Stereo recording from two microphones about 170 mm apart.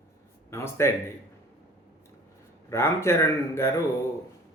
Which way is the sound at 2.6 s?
15° left (ahead or behind).